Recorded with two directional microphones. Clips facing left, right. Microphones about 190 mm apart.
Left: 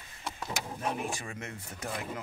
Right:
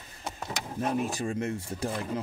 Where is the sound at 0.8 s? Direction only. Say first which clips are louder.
Right 8 dB; 35° right (ahead or behind).